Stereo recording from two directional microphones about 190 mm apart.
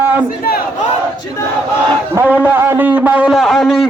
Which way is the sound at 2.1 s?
10° right (ahead or behind).